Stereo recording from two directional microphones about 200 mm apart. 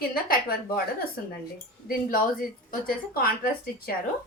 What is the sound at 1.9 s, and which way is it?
A woman's voice, 45° left (ahead or behind).